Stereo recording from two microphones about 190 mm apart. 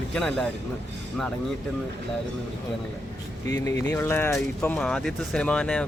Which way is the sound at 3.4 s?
15° left (ahead or behind).